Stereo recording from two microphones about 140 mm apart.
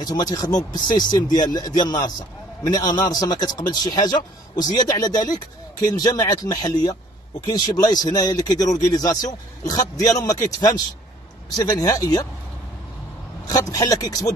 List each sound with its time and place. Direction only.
0.0 s speech: 25° left (ahead or behind)
11.5 s speech: 30° left (ahead or behind)
13.5 s speech: 25° left (ahead or behind)